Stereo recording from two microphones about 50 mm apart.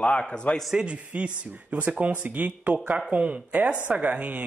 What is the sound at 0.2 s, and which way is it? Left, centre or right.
Speech, centre.